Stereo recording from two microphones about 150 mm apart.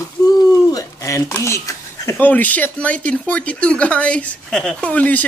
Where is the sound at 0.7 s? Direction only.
20° left (ahead or behind).